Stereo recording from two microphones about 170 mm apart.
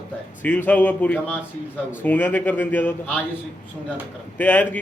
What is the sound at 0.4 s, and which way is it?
Speech, 10° left (ahead or behind).